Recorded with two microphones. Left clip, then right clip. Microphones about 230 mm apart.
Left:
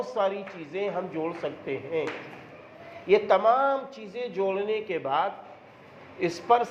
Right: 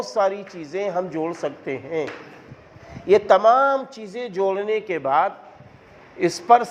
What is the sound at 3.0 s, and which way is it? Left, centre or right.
A man's voice, right.